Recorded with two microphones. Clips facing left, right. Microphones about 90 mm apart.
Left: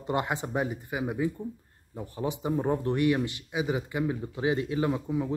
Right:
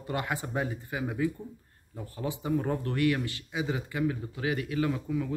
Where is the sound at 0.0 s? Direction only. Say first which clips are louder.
Left 3 dB; 20° left (ahead or behind).